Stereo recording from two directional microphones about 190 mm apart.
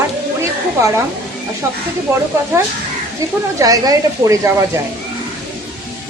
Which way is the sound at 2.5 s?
15° right (ahead or behind).